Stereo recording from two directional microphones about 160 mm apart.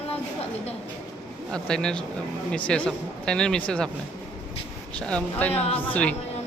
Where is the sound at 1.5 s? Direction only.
5° left (ahead or behind).